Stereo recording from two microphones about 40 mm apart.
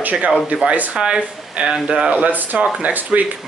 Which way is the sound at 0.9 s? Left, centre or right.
Right.